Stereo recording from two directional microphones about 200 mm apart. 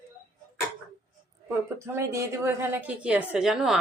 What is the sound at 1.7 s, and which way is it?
A woman's voice, 15° right (ahead or behind).